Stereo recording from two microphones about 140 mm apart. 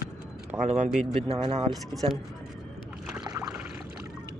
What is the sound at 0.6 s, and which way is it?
Speech, 50° right (ahead or behind).